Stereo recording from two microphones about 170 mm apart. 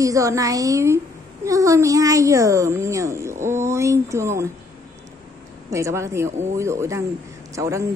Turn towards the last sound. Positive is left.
turn(degrees=-20)  # may be behind; listen again after turning